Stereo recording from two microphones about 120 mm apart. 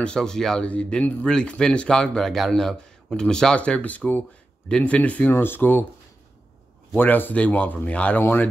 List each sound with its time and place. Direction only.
0.0 s speech: 5° left (ahead or behind)
7.0 s speech: 15° left (ahead or behind)